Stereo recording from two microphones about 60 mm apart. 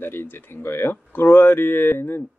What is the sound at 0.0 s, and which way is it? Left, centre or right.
Speech, left.